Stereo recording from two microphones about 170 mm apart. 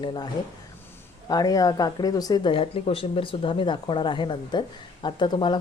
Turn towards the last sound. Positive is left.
turn(degrees=25)  # may be behind; listen again after turning